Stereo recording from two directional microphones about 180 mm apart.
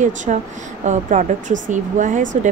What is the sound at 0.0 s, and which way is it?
Speech, 45° right (ahead or behind).